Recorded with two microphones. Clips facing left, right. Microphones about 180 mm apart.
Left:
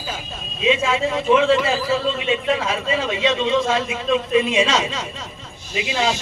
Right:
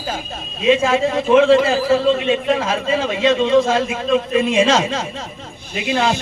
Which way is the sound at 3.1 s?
50° right (ahead or behind).